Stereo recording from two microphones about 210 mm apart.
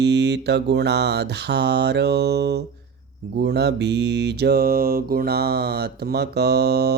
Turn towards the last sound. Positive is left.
turn(degrees=-50)  # may be behind; listen again after turning